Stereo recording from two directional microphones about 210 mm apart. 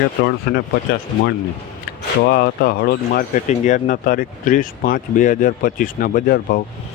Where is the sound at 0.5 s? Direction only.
50° left (ahead or behind).